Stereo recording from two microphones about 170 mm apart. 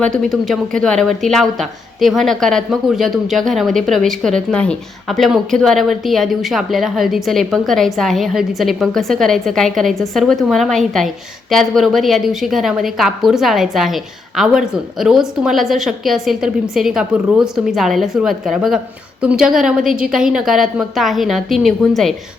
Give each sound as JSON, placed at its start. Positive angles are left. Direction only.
{"t": 0.0, "sound": "a woman's voice", "side_deg": 5}